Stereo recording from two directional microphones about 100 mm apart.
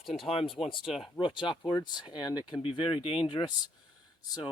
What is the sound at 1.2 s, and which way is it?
Speech, 55° left (ahead or behind).